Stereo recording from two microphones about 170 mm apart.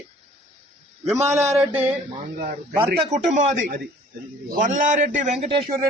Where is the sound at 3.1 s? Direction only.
45° right (ahead or behind).